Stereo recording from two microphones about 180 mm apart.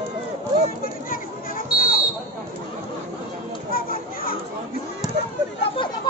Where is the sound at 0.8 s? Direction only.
55° left (ahead or behind).